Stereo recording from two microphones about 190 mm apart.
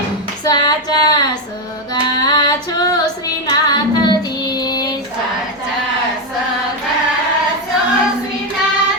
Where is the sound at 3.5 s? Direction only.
20° left (ahead or behind).